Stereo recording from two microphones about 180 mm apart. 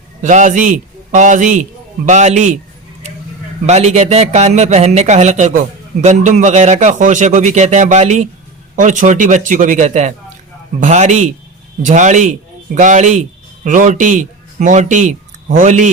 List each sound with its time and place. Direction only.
0.2 s a man's voice: 45° right (ahead or behind)
3.7 s a man's voice: 35° right (ahead or behind)